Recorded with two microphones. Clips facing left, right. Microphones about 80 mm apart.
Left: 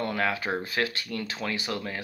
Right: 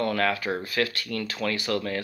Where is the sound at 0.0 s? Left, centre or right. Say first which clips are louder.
Right 3 dB; centre.